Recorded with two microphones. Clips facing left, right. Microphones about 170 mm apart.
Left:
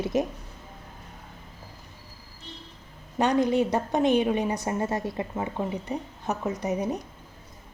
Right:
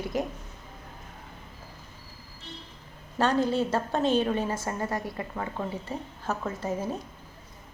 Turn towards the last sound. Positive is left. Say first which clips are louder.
# left 3 dB
turn(degrees=20)  # may be behind; listen again after turning